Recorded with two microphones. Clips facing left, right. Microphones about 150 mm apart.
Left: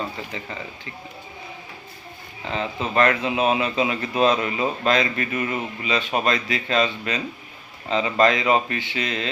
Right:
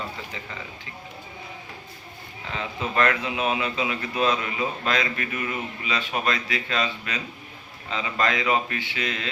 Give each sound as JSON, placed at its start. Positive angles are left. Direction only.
{"t": 2.5, "sound": "speech", "side_deg": 25}